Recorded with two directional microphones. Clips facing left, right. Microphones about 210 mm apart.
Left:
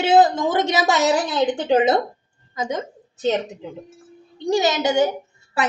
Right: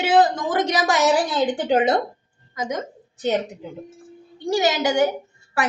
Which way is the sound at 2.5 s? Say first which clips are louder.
Left 1 dB; 25° left (ahead or behind).